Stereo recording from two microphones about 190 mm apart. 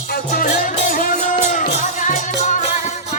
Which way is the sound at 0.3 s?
45° left (ahead or behind).